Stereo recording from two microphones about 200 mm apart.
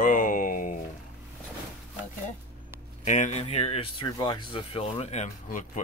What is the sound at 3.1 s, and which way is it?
Speech, 35° left (ahead or behind).